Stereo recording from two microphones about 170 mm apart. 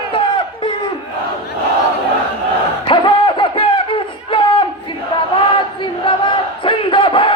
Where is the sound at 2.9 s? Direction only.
30° left (ahead or behind).